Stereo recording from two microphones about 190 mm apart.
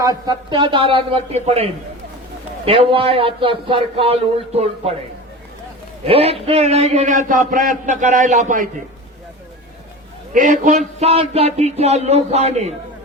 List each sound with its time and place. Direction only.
0.0 s a man's voice: 20° right (ahead or behind)
6.1 s a man's voice: 30° right (ahead or behind)
10.3 s a man's voice: 40° right (ahead or behind)